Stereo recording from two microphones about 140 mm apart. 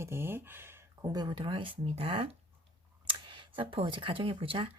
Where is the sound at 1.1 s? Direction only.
30° right (ahead or behind).